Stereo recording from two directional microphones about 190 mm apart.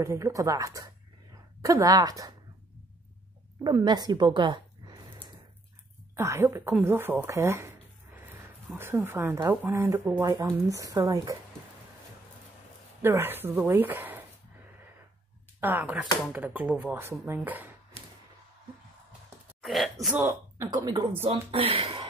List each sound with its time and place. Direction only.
0.0 s speech: 15° right (ahead or behind)
3.6 s speech: 20° right (ahead or behind)
6.1 s speech: 15° right (ahead or behind)
6.8 s a sound: 10° right (ahead or behind)
8.7 s speech: 10° right (ahead or behind)
13.0 s speech: 10° right (ahead or behind)
15.6 s speech: 10° right (ahead or behind)
19.6 s speech: centre (ahead or behind); by 22.0 s 30° right (ahead or behind)